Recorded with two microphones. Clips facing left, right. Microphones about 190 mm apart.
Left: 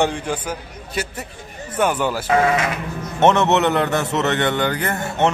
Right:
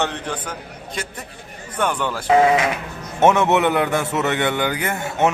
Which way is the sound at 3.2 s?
10° right (ahead or behind).